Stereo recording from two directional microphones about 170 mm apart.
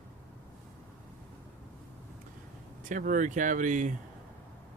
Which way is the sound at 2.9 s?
50° right (ahead or behind).